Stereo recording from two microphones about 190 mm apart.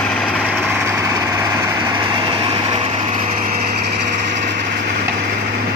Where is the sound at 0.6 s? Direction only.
10° right (ahead or behind); by 3.6 s 30° right (ahead or behind).